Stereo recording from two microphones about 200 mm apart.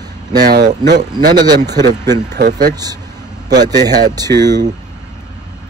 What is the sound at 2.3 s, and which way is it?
Speech, 55° right (ahead or behind).